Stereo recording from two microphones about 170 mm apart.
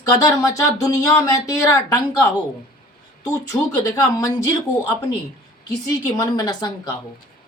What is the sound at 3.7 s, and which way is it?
A woman's voice, 20° left (ahead or behind).